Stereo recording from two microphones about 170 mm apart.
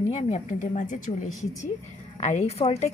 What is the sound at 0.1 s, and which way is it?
A woman's voice, 45° left (ahead or behind).